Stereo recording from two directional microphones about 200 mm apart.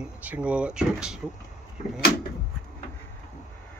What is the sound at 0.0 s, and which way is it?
Speech, 5° right (ahead or behind).